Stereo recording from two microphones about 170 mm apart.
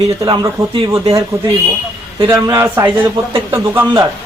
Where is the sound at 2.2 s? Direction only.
25° right (ahead or behind).